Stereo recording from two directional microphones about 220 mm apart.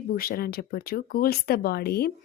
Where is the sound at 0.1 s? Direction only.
40° left (ahead or behind).